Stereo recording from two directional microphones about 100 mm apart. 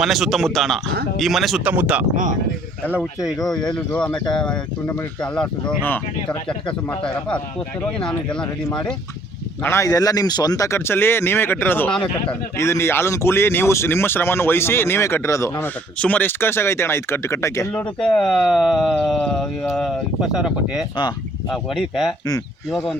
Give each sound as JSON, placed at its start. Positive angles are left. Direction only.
{"t": 0.0, "sound": "speech", "side_deg": 0}
{"t": 1.6, "sound": "speech", "side_deg": -15}
{"t": 3.2, "sound": "speech", "side_deg": 5}
{"t": 7.0, "sound": "speech", "side_deg": 10}
{"t": 9.6, "sound": "speech", "side_deg": 30}
{"t": 10.7, "sound": "speech", "side_deg": 25}
{"t": 16.0, "sound": "speech", "side_deg": 15}
{"t": 18.0, "sound": "speech", "side_deg": 5}